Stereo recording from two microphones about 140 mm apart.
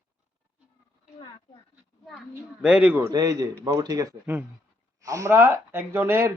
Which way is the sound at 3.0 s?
25° right (ahead or behind).